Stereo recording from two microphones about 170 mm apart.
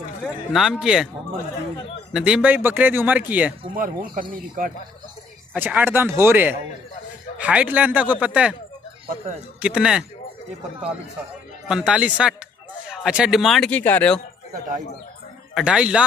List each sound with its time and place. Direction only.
0.2 s speech: centre (ahead or behind)
2.1 s a man's voice: 5° right (ahead or behind)
3.7 s speech: 55° right (ahead or behind)
5.5 s a man's voice: 10° right (ahead or behind)
9.6 s speech: 5° right (ahead or behind)
11.6 s a man's voice: 5° right (ahead or behind)
15.5 s speech: 5° right (ahead or behind)